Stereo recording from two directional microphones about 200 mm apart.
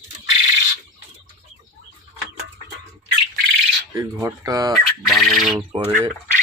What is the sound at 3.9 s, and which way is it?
Speech, 15° right (ahead or behind).